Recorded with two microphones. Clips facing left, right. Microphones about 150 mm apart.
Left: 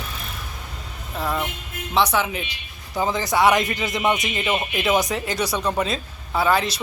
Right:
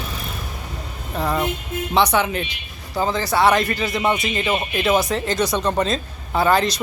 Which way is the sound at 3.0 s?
15° left (ahead or behind).